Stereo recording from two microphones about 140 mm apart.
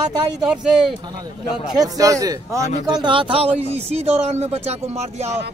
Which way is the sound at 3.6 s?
50° right (ahead or behind).